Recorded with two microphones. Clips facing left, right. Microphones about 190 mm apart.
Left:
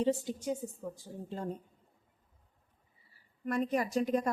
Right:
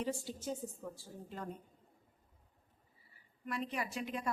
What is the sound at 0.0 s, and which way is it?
A woman's voice, 20° left (ahead or behind).